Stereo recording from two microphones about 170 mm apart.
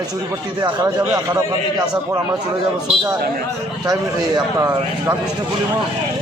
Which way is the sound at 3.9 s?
20° right (ahead or behind).